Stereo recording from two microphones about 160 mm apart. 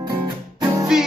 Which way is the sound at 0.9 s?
5° right (ahead or behind).